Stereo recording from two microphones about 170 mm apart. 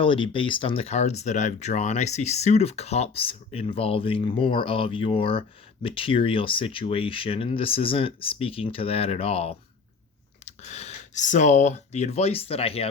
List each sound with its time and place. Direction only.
0.0 s speech: 30° left (ahead or behind)